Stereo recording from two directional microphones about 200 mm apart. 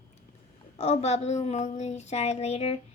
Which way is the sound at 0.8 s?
35° left (ahead or behind).